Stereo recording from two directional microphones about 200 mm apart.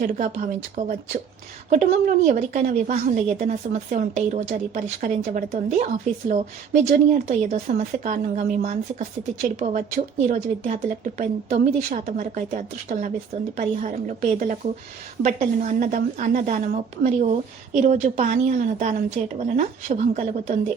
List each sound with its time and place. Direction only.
0.0 s a woman's voice: 40° right (ahead or behind)